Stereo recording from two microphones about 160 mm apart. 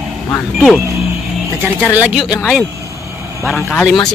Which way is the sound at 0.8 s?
20° right (ahead or behind).